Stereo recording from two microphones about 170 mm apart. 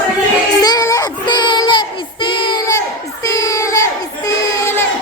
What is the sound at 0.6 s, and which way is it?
Child singing, 20° left (ahead or behind).